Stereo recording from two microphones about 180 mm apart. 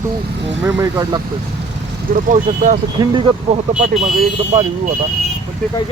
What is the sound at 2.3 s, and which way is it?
Speech, 45° right (ahead or behind).